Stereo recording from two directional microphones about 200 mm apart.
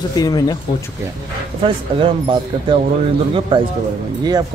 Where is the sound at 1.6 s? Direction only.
25° right (ahead or behind).